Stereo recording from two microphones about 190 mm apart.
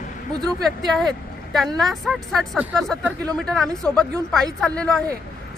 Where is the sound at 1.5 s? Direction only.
Centre (ahead or behind).